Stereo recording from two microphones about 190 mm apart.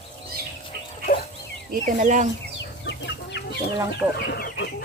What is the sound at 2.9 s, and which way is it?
Chicken, 65° left (ahead or behind).